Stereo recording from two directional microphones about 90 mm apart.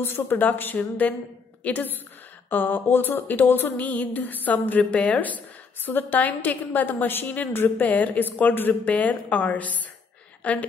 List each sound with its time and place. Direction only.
0.0 s a woman's voice: 25° left (ahead or behind)